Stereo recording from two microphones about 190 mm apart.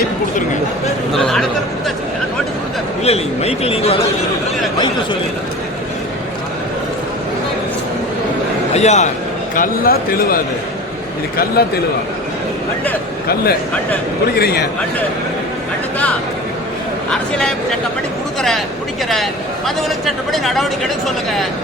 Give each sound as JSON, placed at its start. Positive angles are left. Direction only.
{"t": 1.1, "sound": "a sound", "side_deg": 0}
{"t": 3.0, "sound": "a man's voice", "side_deg": 35}
{"t": 8.7, "sound": "a man's voice", "side_deg": 35}
{"t": 9.6, "sound": "a man's voice", "side_deg": 50}
{"t": 11.6, "sound": "a man's voice", "side_deg": 55}
{"t": 14.3, "sound": "a man's voice", "side_deg": 55}
{"t": 17.1, "sound": "speech", "side_deg": 5}
{"t": 19.0, "sound": "speech", "side_deg": 0}